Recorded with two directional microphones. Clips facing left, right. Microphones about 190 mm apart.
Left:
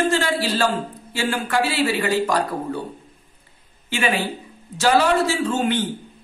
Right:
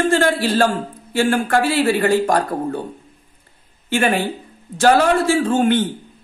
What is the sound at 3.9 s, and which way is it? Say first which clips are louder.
A man's voice: right 4 dB; 50° right (ahead or behind).